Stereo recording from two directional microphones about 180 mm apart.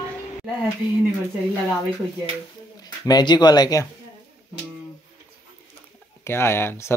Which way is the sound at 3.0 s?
25° left (ahead or behind).